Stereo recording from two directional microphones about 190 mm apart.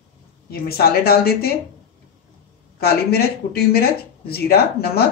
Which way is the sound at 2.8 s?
55° left (ahead or behind).